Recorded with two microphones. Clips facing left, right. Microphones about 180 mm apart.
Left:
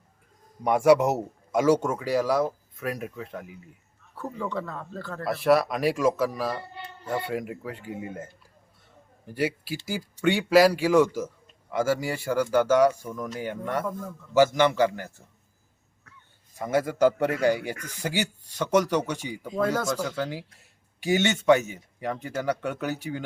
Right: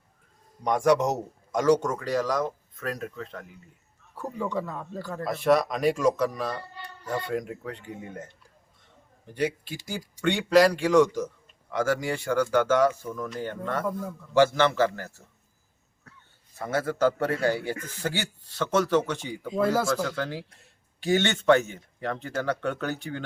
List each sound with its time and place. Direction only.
0.6 s a man's voice: 10° left (ahead or behind)
4.1 s speech: 10° right (ahead or behind)
5.2 s speech: 5° left (ahead or behind)
6.6 s a sound: 20° left (ahead or behind)
7.1 s a man's voice: 5° left (ahead or behind)
16.6 s a man's voice: 10° left (ahead or behind)
19.5 s speech: 5° right (ahead or behind)
19.9 s a man's voice: 10° left (ahead or behind)